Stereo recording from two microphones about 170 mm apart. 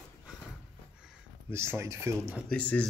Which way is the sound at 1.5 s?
15° right (ahead or behind).